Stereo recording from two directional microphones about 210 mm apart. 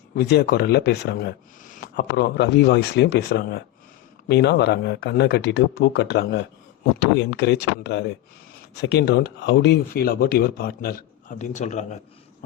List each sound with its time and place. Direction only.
0.2 s speech: 50° left (ahead or behind); by 11.9 s 35° left (ahead or behind)